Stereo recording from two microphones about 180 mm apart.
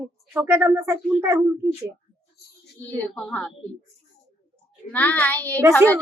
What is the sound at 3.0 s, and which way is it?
Speech, 5° left (ahead or behind).